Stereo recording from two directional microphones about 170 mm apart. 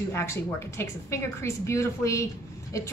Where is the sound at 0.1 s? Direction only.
15° left (ahead or behind).